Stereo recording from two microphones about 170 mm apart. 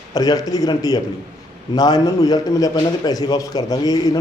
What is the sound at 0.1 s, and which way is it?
A man's voice, 20° left (ahead or behind).